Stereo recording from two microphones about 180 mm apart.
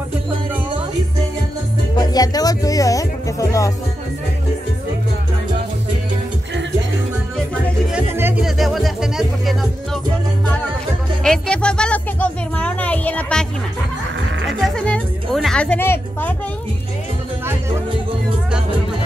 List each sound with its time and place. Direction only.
2.0 s speech: 20° left (ahead or behind)
7.9 s music: 10° right (ahead or behind)
8.5 s music: centre (ahead or behind)
11.2 s music: 5° left (ahead or behind)
14.6 s speech: 5° left (ahead or behind)